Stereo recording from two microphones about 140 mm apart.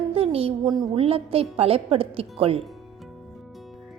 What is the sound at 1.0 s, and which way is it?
A woman's voice, 45° right (ahead or behind).